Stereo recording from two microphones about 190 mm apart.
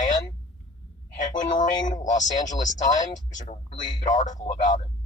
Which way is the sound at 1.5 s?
40° left (ahead or behind).